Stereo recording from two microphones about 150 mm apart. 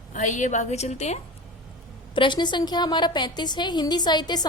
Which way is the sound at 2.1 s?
30° left (ahead or behind).